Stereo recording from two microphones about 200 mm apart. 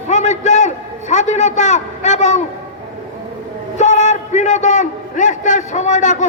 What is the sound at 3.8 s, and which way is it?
A man's voice, 35° left (ahead or behind).